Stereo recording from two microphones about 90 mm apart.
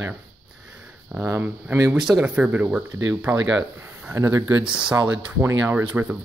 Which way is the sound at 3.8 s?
15° right (ahead or behind).